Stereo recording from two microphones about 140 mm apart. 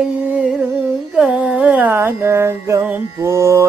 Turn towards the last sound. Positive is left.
turn(degrees=-20)  # may be behind; listen again after turning